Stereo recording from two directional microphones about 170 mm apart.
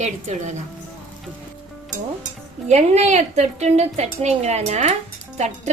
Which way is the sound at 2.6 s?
40° right (ahead or behind).